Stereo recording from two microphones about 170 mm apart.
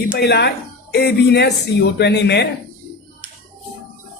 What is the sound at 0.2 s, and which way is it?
Speech, 75° left (ahead or behind).